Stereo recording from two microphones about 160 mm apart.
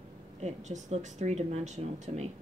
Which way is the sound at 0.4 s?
45° right (ahead or behind).